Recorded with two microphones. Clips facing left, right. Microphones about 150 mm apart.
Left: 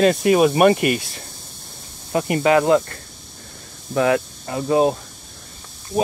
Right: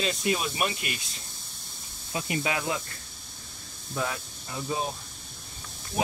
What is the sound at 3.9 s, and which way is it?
Speech, 75° left (ahead or behind).